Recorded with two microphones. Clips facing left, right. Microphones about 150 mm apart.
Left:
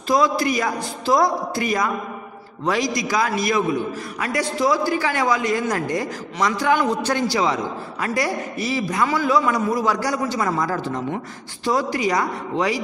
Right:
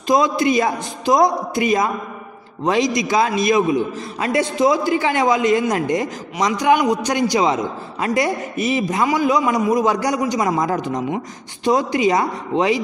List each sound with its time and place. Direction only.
0.0 s a man's voice: 20° right (ahead or behind)